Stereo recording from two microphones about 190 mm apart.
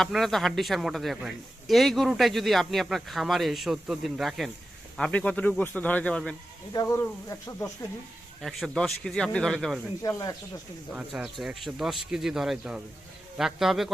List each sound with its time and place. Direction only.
0.0 s a man's voice: centre (ahead or behind)
6.7 s speech: 15° left (ahead or behind)
8.4 s a man's voice: centre (ahead or behind)
10.0 s speech: 20° left (ahead or behind)
10.9 s a man's voice: 5° right (ahead or behind)